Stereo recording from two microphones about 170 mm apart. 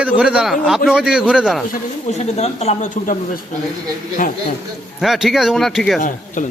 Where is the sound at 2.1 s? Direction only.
40° left (ahead or behind).